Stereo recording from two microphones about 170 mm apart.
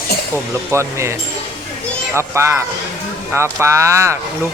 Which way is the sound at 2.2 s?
15° right (ahead or behind).